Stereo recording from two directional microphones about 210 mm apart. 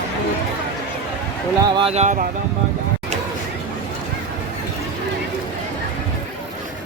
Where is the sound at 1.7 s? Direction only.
30° right (ahead or behind).